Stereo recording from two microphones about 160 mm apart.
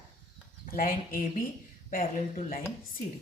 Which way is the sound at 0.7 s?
60° left (ahead or behind).